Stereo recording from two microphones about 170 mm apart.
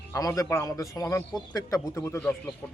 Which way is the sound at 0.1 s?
20° left (ahead or behind).